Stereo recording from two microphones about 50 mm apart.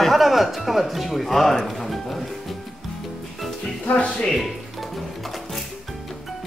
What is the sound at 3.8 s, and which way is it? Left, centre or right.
Music, left.